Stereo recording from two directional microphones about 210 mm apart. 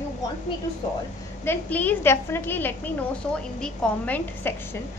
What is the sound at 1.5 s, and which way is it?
A woman's voice, 10° left (ahead or behind).